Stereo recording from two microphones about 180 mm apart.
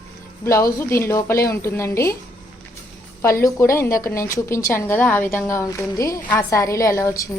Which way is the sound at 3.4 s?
15° left (ahead or behind).